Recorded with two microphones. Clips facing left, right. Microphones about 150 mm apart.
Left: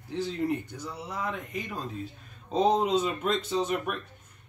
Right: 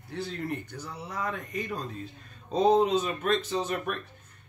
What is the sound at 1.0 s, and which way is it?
Speech, 10° left (ahead or behind).